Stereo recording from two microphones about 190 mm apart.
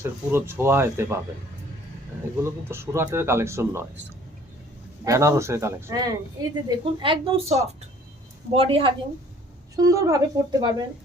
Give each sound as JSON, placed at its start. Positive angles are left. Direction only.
{"t": 0.0, "sound": "speech", "side_deg": -10}
{"t": 2.4, "sound": "speech", "side_deg": -15}
{"t": 5.0, "sound": "speech", "side_deg": -15}